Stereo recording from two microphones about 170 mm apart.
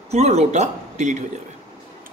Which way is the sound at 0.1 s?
40° right (ahead or behind).